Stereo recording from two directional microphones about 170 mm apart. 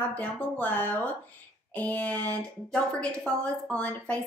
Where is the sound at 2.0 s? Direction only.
20° right (ahead or behind).